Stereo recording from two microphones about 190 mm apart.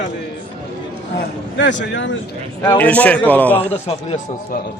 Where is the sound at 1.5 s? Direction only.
70° left (ahead or behind).